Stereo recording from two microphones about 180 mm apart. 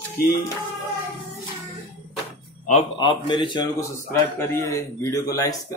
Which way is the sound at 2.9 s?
25° left (ahead or behind).